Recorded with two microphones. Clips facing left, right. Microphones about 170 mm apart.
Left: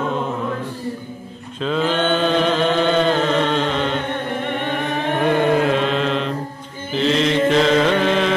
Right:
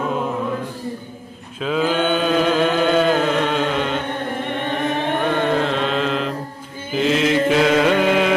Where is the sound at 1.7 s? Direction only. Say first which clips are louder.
Even; 5° right (ahead or behind).